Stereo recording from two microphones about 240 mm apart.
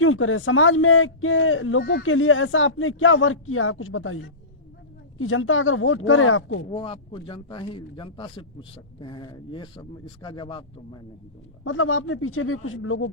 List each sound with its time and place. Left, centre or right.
0.0 s speech: left
6.7 s a man's voice: left
11.6 s speech: left